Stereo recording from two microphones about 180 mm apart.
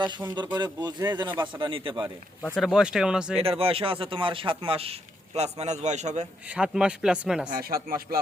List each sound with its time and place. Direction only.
0.5 s a man's voice: 25° right (ahead or behind)
2.6 s speech: centre (ahead or behind)
3.3 s a man's voice: 30° right (ahead or behind)
6.5 s speech: 5° right (ahead or behind)
7.5 s speech: 55° right (ahead or behind)